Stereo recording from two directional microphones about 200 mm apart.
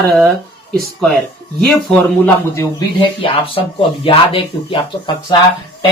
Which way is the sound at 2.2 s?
20° left (ahead or behind).